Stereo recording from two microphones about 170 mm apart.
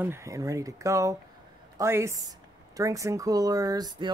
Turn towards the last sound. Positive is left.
turn(degrees=-20)  # may be behind; listen again after turning